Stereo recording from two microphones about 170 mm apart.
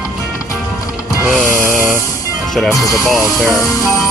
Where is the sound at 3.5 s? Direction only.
20° left (ahead or behind).